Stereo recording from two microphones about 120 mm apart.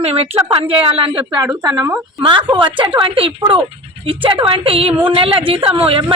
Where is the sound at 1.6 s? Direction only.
25° right (ahead or behind).